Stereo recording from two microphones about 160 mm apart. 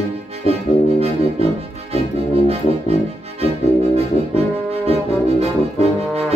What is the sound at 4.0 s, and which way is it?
Brass instrument, 40° right (ahead or behind).